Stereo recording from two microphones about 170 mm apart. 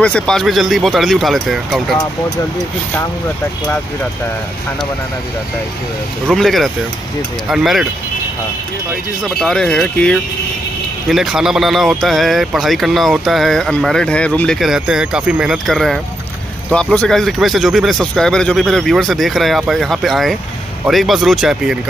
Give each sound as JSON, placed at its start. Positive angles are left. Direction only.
{"t": 0.0, "sound": "speech", "side_deg": 5}
{"t": 6.2, "sound": "speech", "side_deg": 0}
{"t": 9.2, "sound": "speech", "side_deg": 5}